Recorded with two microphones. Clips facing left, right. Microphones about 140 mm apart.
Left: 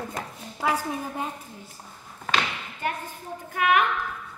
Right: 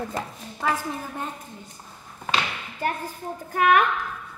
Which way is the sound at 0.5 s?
10° left (ahead or behind).